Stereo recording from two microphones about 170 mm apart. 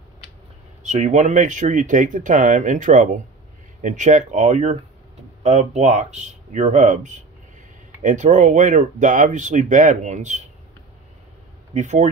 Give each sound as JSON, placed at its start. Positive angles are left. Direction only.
{"t": 0.8, "sound": "speech", "side_deg": -45}
{"t": 11.7, "sound": "speech", "side_deg": -45}